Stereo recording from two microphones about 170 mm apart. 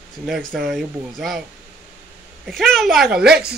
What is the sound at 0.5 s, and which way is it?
Speech, centre (ahead or behind).